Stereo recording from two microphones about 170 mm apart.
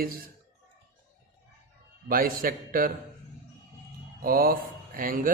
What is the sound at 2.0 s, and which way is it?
Speech, 55° right (ahead or behind).